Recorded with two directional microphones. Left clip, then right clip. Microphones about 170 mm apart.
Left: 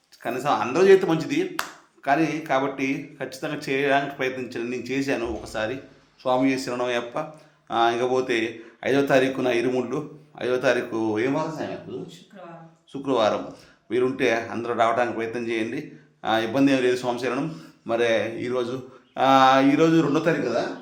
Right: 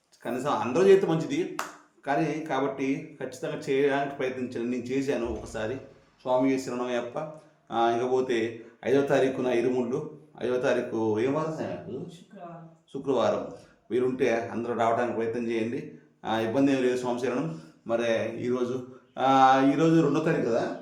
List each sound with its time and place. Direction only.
0.2 s speech: 15° left (ahead or behind)
1.6 s a sound: 5° right (ahead or behind)
2.0 s a man's voice: 15° left (ahead or behind)
12.9 s a man's voice: 15° left (ahead or behind)
19.1 s speech: 15° left (ahead or behind)